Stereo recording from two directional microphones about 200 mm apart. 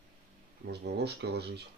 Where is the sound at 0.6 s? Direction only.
55° right (ahead or behind).